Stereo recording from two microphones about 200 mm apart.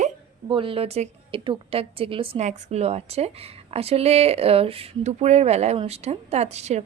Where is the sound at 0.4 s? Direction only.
25° right (ahead or behind).